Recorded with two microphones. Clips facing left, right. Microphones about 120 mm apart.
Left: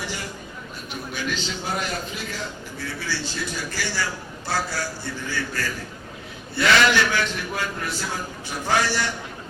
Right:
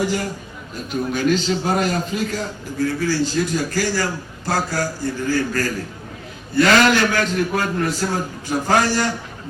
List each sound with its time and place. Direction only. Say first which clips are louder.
0.0 s a man's voice: right 10 dB; 45° right (ahead or behind)